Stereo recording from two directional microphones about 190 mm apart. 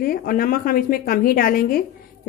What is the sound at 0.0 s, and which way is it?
A woman's voice, 50° left (ahead or behind).